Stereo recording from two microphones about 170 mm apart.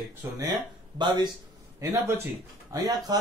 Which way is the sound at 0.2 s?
25° right (ahead or behind).